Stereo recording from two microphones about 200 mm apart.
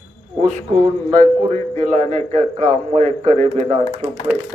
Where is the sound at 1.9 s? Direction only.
35° right (ahead or behind).